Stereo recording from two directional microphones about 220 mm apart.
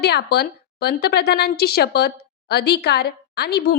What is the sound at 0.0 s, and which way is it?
A woman's voice, 45° left (ahead or behind).